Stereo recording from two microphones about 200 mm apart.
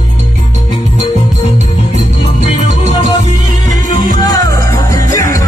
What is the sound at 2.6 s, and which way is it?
Music, 35° right (ahead or behind).